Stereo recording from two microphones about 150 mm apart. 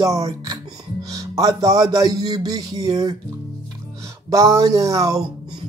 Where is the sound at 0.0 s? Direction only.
25° right (ahead or behind).